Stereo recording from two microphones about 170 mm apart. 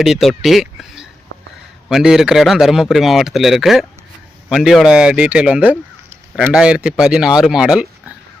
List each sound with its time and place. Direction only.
0.0 s speech: centre (ahead or behind)